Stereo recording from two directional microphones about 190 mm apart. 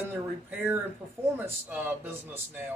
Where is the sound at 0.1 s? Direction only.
10° right (ahead or behind).